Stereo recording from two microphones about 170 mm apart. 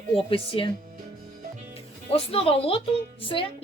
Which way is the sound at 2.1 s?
35° left (ahead or behind).